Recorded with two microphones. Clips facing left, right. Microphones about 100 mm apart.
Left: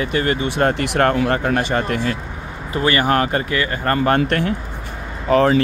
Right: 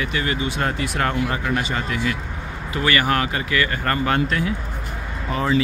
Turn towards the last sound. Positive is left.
turn(degrees=70)  # may be behind; listen again after turning